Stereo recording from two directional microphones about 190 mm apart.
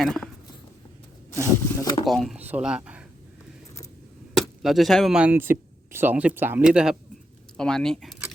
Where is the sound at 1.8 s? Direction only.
25° left (ahead or behind).